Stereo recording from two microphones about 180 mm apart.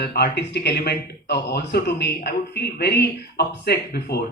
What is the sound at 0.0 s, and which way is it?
A man's voice, 65° left (ahead or behind).